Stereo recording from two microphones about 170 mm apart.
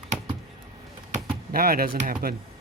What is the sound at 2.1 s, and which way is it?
Speech, 60° right (ahead or behind).